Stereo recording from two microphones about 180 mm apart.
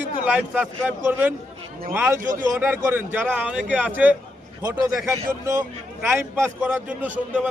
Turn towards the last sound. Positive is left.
turn(degrees=-5)  # may be behind; listen again after turning